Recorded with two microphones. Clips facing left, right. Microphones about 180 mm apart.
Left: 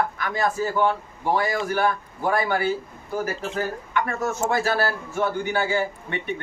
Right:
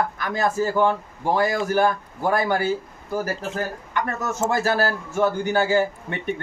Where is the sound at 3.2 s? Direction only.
40° right (ahead or behind).